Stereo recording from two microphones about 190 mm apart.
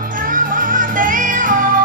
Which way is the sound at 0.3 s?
45° right (ahead or behind).